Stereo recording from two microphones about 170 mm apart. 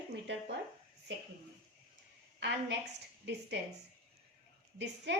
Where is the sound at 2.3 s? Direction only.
90° right.